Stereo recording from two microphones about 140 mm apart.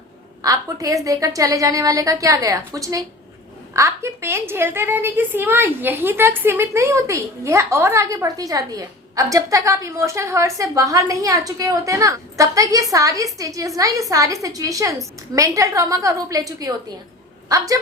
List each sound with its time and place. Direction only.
0.4 s a woman's voice: 25° right (ahead or behind)